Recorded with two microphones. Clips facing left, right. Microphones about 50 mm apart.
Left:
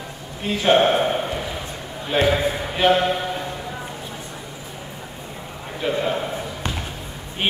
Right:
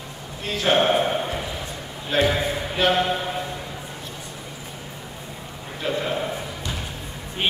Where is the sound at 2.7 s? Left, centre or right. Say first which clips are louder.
Left 3 dB; centre.